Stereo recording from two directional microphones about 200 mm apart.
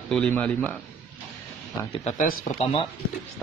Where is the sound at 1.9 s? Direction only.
35° left (ahead or behind).